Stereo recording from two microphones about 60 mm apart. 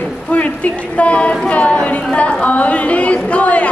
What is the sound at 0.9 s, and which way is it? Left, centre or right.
Speech, left.